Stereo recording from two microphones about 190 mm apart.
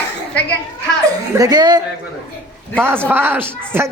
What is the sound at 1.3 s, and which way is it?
Speech, 20° right (ahead or behind).